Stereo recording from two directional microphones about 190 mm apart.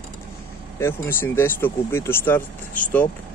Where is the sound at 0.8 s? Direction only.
10° left (ahead or behind).